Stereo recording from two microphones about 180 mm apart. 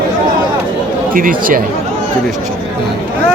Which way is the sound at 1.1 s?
50° right (ahead or behind).